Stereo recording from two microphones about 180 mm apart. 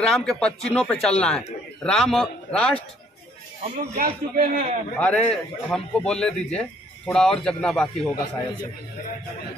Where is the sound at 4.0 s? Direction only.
50° right (ahead or behind).